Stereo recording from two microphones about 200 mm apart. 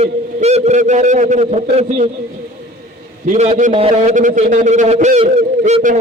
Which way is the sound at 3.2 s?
35° right (ahead or behind).